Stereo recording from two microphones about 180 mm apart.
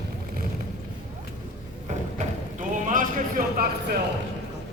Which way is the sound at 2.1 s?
45° right (ahead or behind).